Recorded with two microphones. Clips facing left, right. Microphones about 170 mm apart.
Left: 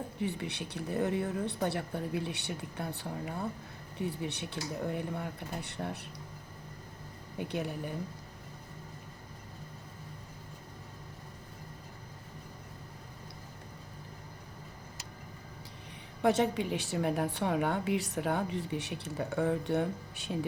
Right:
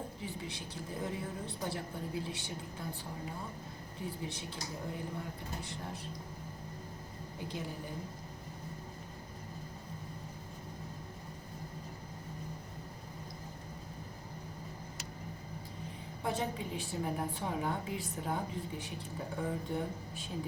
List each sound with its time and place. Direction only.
0.2 s a woman's voice: 65° left (ahead or behind)
4.2 s a woman's voice: 65° left (ahead or behind)
7.3 s speech: 65° left (ahead or behind)
16.2 s a woman's voice: 80° left